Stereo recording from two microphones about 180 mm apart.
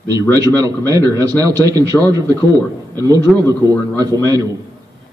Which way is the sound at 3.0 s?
20° right (ahead or behind).